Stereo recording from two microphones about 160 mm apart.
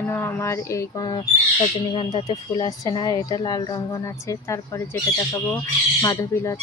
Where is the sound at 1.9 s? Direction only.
35° left (ahead or behind).